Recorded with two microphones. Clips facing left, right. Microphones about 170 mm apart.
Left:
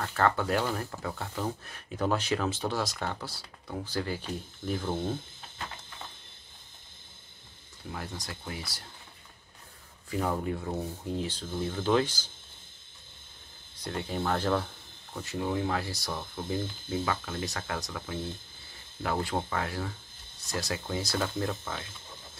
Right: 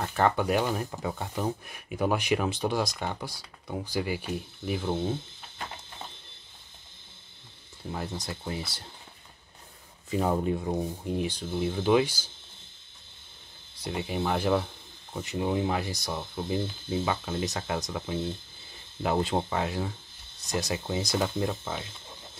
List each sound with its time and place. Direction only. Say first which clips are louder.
0.0 s speech: right 2 dB; 15° right (ahead or behind)
7.9 s speech: right 5 dB; 25° right (ahead or behind)
10.1 s speech: right 4 dB; 20° right (ahead or behind)
13.7 s speech: right 2 dB; 10° right (ahead or behind)